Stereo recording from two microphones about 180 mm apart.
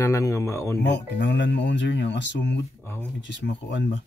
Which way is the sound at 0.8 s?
75° left (ahead or behind).